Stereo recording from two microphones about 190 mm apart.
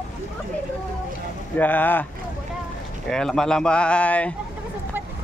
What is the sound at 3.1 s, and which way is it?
Speech, 5° left (ahead or behind).